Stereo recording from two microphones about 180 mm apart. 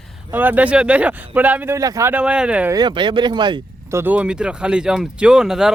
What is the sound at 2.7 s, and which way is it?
Speech, 25° right (ahead or behind).